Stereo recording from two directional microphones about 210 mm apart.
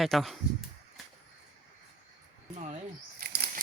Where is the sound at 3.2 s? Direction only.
45° right (ahead or behind).